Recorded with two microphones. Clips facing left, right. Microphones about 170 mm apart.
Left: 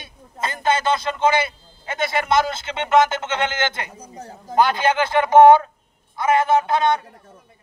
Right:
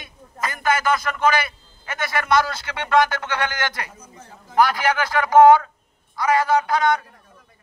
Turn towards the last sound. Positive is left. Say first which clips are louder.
# left 1 dB
turn(degrees=25)  # may be behind; listen again after turning